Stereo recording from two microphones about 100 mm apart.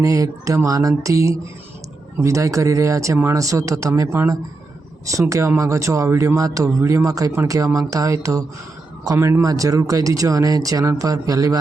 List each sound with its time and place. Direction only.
0.0 s speech: 35° right (ahead or behind)
5.3 s speech: 30° right (ahead or behind)